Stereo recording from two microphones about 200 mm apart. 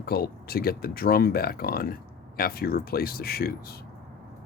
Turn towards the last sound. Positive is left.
turn(degrees=50)  # may be behind; listen again after turning